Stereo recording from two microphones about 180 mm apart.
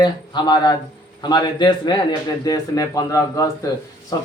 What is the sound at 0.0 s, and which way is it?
A man's voice, 25° left (ahead or behind).